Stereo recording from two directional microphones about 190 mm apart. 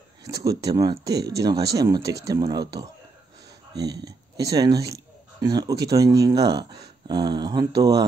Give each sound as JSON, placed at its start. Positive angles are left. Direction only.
{"t": 0.2, "sound": "speech", "side_deg": -15}
{"t": 3.9, "sound": "speech", "side_deg": -20}